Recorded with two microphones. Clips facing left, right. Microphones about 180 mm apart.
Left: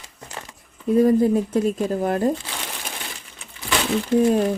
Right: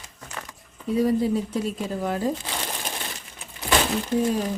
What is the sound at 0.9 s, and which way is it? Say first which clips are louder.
Speech: left 5 dB; 50° left (ahead or behind).